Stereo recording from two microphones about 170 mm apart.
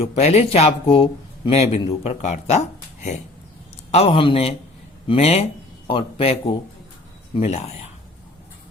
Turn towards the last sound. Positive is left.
turn(degrees=40)  # may be behind; listen again after turning